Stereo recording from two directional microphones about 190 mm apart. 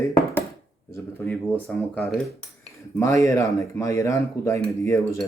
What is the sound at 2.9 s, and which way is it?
Speech, 15° left (ahead or behind).